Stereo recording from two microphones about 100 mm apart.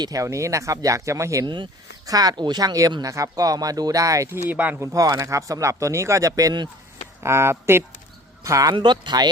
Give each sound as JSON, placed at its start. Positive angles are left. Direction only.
{"t": 0.0, "sound": "speech", "side_deg": -35}
{"t": 4.4, "sound": "speech", "side_deg": -15}
{"t": 4.8, "sound": "speech", "side_deg": -35}
{"t": 7.2, "sound": "speech", "side_deg": -25}
{"t": 8.7, "sound": "speech", "side_deg": -50}